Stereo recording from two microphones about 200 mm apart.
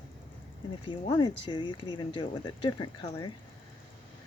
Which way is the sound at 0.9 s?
25° left (ahead or behind).